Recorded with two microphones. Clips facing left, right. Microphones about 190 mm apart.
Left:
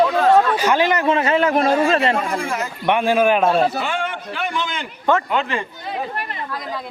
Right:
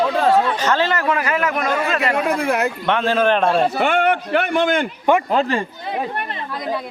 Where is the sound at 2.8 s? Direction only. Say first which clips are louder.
Left 3 dB; 10° left (ahead or behind).